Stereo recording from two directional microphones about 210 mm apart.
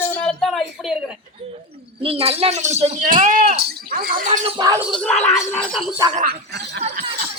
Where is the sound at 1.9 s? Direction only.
25° right (ahead or behind).